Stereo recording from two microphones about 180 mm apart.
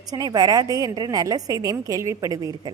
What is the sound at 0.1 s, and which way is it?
A woman's voice, 20° right (ahead or behind).